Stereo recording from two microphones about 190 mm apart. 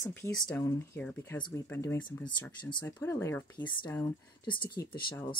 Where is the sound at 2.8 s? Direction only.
15° left (ahead or behind).